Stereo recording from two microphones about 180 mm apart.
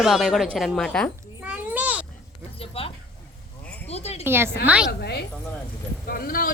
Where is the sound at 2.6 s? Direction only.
35° left (ahead or behind).